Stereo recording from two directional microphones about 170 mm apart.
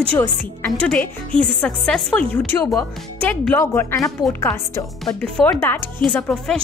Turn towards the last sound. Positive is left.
turn(degrees=5)  # may be behind; listen again after turning